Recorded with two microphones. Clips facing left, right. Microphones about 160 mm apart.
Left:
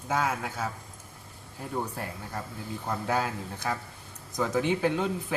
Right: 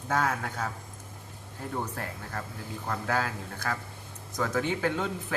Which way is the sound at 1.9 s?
15° left (ahead or behind).